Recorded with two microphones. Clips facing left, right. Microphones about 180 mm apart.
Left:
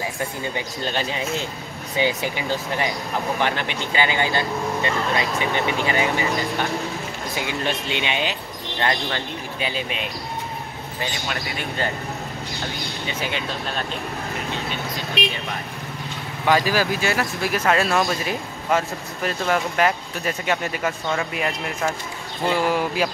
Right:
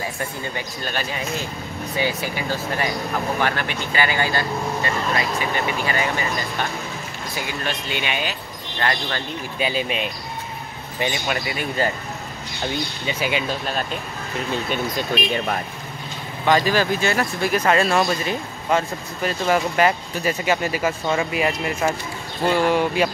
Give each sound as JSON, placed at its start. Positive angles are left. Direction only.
{"t": 0.2, "sound": "speech", "side_deg": 20}
{"t": 11.2, "sound": "speech", "side_deg": -5}
{"t": 13.2, "sound": "speech", "side_deg": -10}
{"t": 15.2, "sound": "speech", "side_deg": 75}
{"t": 16.4, "sound": "speech", "side_deg": 10}